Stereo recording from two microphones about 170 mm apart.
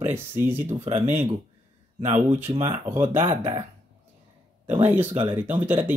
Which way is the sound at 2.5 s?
30° right (ahead or behind).